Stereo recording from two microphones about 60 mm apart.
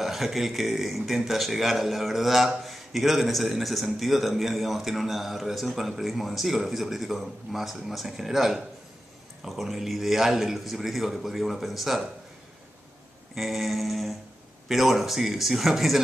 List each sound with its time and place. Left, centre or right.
0.0 s a man's voice: centre
13.3 s a man's voice: centre